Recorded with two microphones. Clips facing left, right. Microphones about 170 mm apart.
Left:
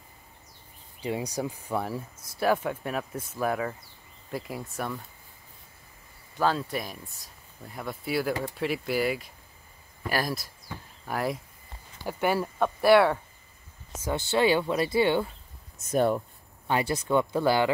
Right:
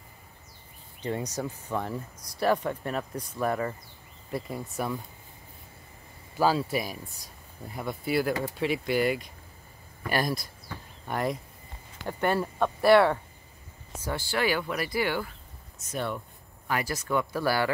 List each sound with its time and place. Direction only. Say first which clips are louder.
1.0 s speech: left 1 dB; 10° left (ahead or behind)
6.3 s speech: right 2 dB; 5° right (ahead or behind)
14.1 s speech: left 5 dB; 25° left (ahead or behind)
15.9 s speech: left 8 dB; 45° left (ahead or behind)
16.6 s speech: left 3 dB; 25° left (ahead or behind)